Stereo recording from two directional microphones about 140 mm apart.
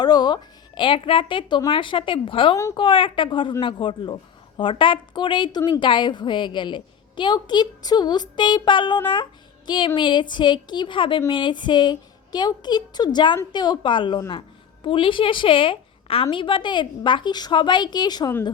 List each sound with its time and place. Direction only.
0.0 s a woman's voice: 30° left (ahead or behind)